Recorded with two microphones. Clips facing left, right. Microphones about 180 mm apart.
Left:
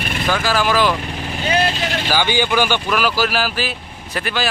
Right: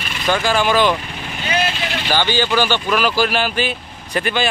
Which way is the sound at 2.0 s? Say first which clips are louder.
Right 1 dB; 10° left (ahead or behind).